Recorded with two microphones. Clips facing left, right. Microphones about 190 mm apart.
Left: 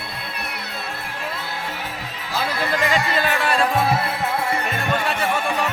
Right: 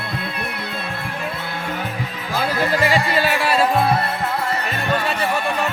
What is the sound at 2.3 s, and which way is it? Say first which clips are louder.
Music: right 3 dB; 45° right (ahead or behind).